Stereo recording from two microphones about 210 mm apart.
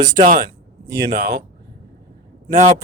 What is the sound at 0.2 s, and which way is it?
Speech, 40° right (ahead or behind).